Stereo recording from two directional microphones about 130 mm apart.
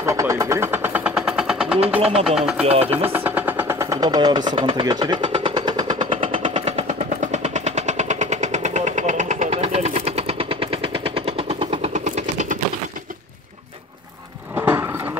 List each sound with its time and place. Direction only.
0.0 s vehicle: 25° right (ahead or behind); by 1.8 s 5° right (ahead or behind)
2.3 s speech: 5° right (ahead or behind)
2.6 s speech: 50° right (ahead or behind)
2.9 s vehicle: 15° right (ahead or behind); by 6.5 s 45° right (ahead or behind)
6.5 s vehicle: 60° right (ahead or behind)
14.6 s a sound: 20° right (ahead or behind)